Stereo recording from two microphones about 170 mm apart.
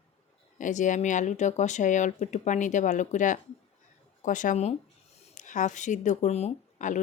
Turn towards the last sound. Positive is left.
turn(degrees=45)  # may be behind; listen again after turning